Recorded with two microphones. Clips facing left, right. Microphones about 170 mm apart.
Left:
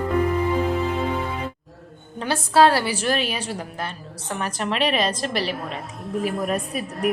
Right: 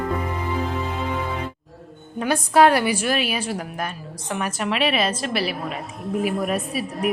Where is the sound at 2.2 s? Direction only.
15° right (ahead or behind).